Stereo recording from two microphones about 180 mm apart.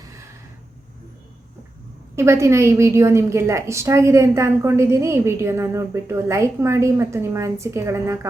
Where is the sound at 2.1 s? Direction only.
15° right (ahead or behind).